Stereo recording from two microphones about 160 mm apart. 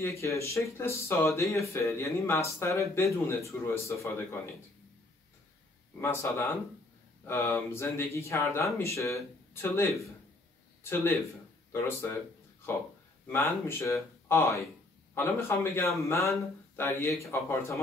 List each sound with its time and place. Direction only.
0.0 s speech: 20° left (ahead or behind)
5.9 s speech: 15° left (ahead or behind)
13.3 s speech: 15° left (ahead or behind)